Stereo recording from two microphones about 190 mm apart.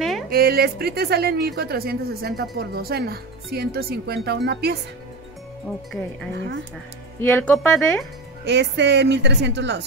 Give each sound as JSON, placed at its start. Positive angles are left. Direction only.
{"t": 0.3, "sound": "speech", "side_deg": -55}
{"t": 6.3, "sound": "speech", "side_deg": -65}
{"t": 7.2, "sound": "speech", "side_deg": 10}
{"t": 8.5, "sound": "speech", "side_deg": -65}